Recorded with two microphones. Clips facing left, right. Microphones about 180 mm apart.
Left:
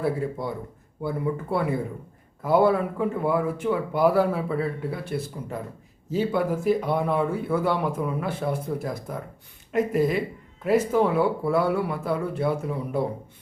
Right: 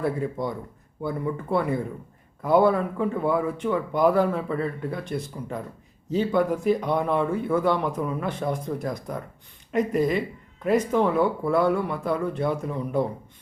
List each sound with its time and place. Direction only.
0.0 s speech: 5° left (ahead or behind)